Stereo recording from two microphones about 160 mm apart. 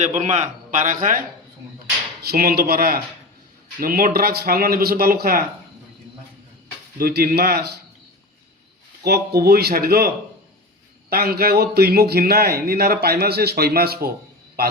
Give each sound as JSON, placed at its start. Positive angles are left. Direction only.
{"t": 0.0, "sound": "a man's voice", "side_deg": -45}
{"t": 2.2, "sound": "speech", "side_deg": -70}
{"t": 7.0, "sound": "speech", "side_deg": -70}
{"t": 9.0, "sound": "speech", "side_deg": -85}
{"t": 11.1, "sound": "a man's voice", "side_deg": -70}